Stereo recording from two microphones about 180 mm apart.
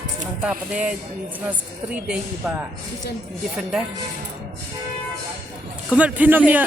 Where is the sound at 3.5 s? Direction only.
5° right (ahead or behind).